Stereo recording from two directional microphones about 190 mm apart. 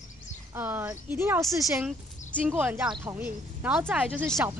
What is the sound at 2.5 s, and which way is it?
Speech, 10° right (ahead or behind).